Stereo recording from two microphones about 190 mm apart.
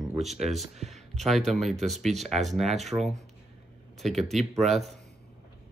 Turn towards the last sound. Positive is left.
turn(degrees=0)  # may be behind; listen again after turning